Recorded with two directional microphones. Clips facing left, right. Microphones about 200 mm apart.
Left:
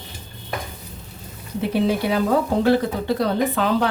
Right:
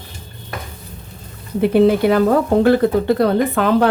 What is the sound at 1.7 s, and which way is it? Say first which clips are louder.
Speech: right 7 dB; 55° right (ahead or behind).